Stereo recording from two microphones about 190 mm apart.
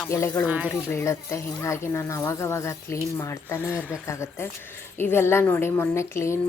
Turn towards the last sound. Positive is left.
turn(degrees=15)  # may be behind; listen again after turning